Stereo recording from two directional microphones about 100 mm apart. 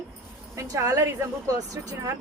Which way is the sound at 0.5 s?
30° right (ahead or behind).